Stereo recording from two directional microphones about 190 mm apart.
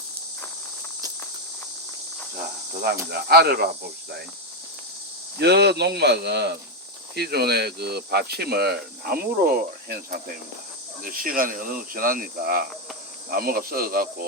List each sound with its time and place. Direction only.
3.1 s speech: 55° right (ahead or behind)
5.4 s speech: 60° right (ahead or behind)